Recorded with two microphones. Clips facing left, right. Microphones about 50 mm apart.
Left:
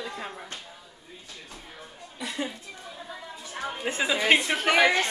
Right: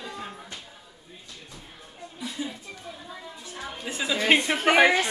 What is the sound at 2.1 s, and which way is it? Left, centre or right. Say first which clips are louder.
Speech: left 1 dB; left.